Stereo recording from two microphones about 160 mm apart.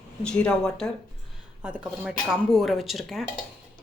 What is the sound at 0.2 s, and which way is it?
Speech, 5° left (ahead or behind).